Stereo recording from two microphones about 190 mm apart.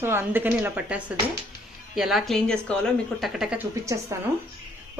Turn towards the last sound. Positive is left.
turn(degrees=-15)  # may be behind; listen again after turning